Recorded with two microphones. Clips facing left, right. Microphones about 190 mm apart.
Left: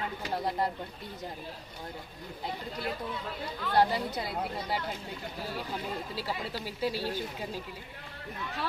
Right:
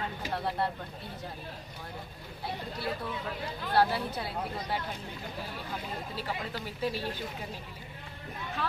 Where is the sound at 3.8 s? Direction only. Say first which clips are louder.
Left 1 dB; 15° left (ahead or behind).